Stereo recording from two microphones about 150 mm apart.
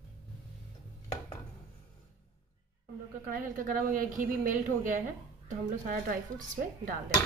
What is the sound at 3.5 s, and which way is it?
Speech, 65° right (ahead or behind).